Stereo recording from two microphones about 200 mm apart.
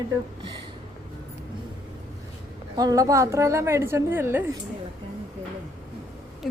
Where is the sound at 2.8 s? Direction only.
15° right (ahead or behind).